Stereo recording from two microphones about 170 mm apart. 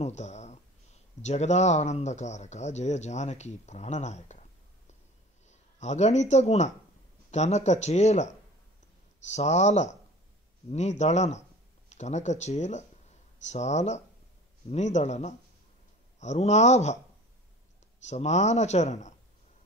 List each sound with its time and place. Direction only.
0.0 s speech: 40° left (ahead or behind)
9.3 s speech: 40° left (ahead or behind)
18.0 s speech: 40° left (ahead or behind)